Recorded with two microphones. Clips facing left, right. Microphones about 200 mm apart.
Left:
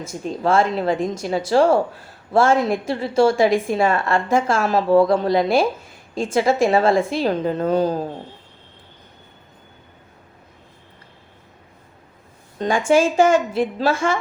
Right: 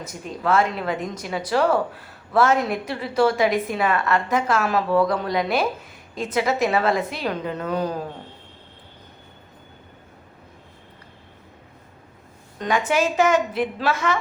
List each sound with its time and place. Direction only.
0.0 s a woman's voice: 25° left (ahead or behind)
12.5 s a woman's voice: 30° left (ahead or behind)